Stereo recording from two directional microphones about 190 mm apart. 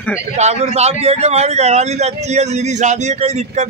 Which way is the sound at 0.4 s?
35° right (ahead or behind).